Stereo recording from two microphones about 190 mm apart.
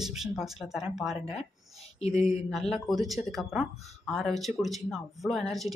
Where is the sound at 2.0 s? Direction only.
35° left (ahead or behind).